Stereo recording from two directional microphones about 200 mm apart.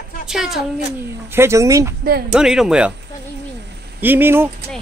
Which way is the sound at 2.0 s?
50° right (ahead or behind).